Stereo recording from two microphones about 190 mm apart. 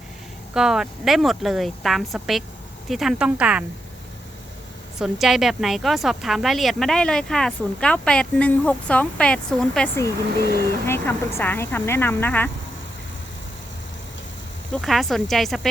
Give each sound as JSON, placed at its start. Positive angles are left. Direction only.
{"t": 0.5, "sound": "speech", "side_deg": 0}
{"t": 4.9, "sound": "speech", "side_deg": 0}
{"t": 10.4, "sound": "speech", "side_deg": -55}
{"t": 10.8, "sound": "speech", "side_deg": 10}
{"t": 14.8, "sound": "speech", "side_deg": 0}